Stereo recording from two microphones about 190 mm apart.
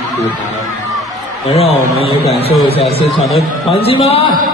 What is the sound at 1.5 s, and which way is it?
A woman's voice, 30° left (ahead or behind).